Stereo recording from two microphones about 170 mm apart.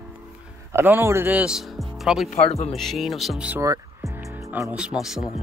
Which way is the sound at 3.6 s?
20° right (ahead or behind).